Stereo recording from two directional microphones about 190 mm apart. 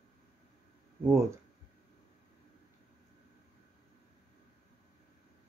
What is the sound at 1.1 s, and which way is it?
Speech, 15° right (ahead or behind).